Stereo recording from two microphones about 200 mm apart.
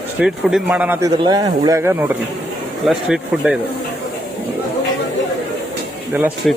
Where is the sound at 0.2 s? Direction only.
5° right (ahead or behind).